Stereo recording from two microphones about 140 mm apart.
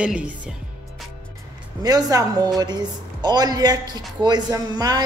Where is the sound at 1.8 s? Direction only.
25° right (ahead or behind).